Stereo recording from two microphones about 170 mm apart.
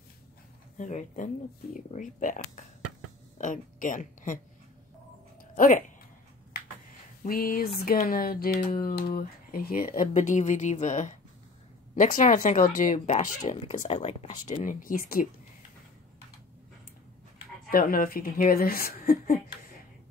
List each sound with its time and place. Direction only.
0.7 s a woman's voice: 45° left (ahead or behind)
5.6 s speech: 55° left (ahead or behind)
7.2 s speech: 60° left (ahead or behind); by 14.3 s 40° left (ahead or behind)
14.6 s speech: 55° left (ahead or behind)
17.6 s speech: 55° left (ahead or behind)